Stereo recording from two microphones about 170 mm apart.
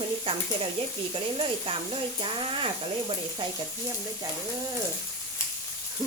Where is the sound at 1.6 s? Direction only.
30° right (ahead or behind).